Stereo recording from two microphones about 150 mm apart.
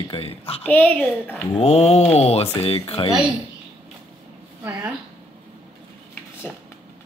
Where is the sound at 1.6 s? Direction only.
40° left (ahead or behind).